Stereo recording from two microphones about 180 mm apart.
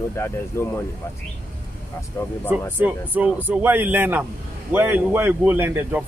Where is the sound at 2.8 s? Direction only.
10° right (ahead or behind).